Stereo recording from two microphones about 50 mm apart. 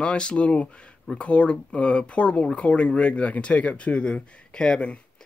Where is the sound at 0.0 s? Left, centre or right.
Left.